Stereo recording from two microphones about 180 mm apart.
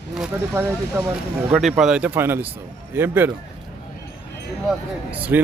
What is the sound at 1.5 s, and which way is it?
Speech, 5° right (ahead or behind).